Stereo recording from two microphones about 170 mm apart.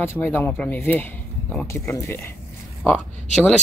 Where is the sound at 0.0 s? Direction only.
15° left (ahead or behind).